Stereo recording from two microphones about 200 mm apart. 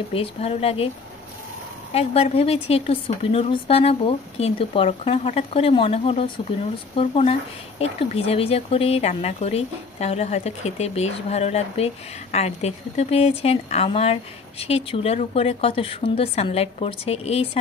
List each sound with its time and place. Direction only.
0.1 s speech: 30° left (ahead or behind)
2.0 s speech: 30° left (ahead or behind)